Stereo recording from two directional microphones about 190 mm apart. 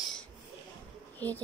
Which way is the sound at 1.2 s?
10° left (ahead or behind).